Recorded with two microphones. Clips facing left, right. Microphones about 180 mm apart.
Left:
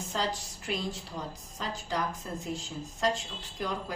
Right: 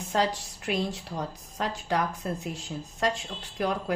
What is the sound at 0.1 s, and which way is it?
A woman's voice, 65° right (ahead or behind).